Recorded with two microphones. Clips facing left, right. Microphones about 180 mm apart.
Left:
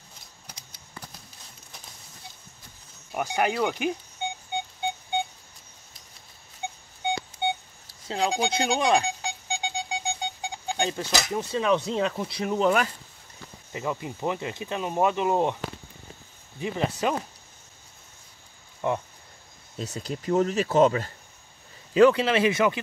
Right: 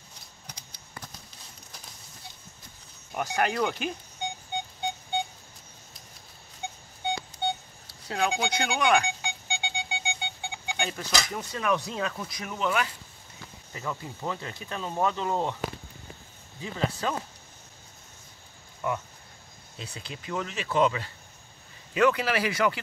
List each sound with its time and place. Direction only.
3.2 s speech: 15° left (ahead or behind)
8.1 s alarm clock: 30° left (ahead or behind)
11.2 s speech: 20° left (ahead or behind); by 12.9 s 40° left (ahead or behind)
13.7 s speech: 20° left (ahead or behind)
16.6 s speech: 20° left (ahead or behind)
18.8 s speech: 30° left (ahead or behind)
19.8 s speech: 40° left (ahead or behind)
21.9 s speech: 30° left (ahead or behind)